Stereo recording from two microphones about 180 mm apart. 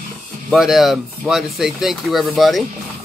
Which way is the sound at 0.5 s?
Centre (ahead or behind).